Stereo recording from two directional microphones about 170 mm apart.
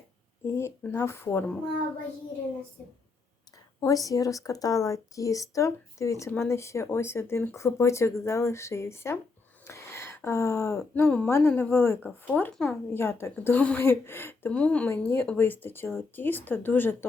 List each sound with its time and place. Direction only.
0.4 s speech: 15° left (ahead or behind)
3.8 s speech: 20° left (ahead or behind)